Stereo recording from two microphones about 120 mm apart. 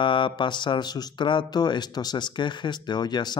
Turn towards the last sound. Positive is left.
turn(degrees=35)  # may be behind; listen again after turning